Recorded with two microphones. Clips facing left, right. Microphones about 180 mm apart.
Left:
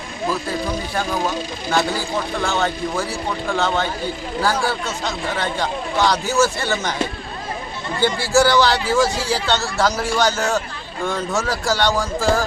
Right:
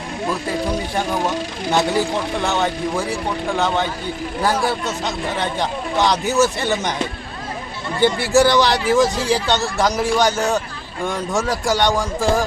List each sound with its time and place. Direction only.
0.6 s a man's voice: 15° right (ahead or behind)
8.0 s a man's voice: 20° right (ahead or behind)